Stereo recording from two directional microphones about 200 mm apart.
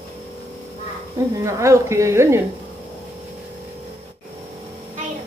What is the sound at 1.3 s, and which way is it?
A woman's voice, 15° right (ahead or behind).